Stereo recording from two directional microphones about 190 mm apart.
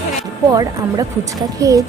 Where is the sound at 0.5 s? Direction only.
20° right (ahead or behind).